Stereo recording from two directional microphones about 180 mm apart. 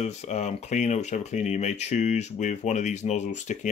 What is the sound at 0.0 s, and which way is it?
Speech, 40° left (ahead or behind).